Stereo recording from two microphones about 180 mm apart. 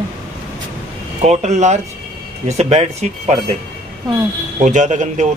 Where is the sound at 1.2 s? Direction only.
40° right (ahead or behind).